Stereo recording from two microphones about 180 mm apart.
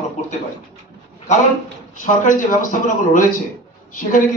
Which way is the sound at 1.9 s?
45° left (ahead or behind).